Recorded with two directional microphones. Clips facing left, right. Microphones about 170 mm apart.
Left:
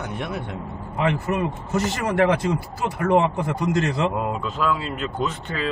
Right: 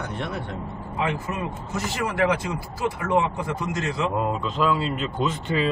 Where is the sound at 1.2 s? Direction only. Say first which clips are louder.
Left 5 dB; 75° left (ahead or behind).